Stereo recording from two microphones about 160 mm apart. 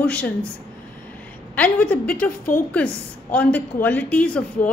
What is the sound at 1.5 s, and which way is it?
A woman's voice, 10° left (ahead or behind).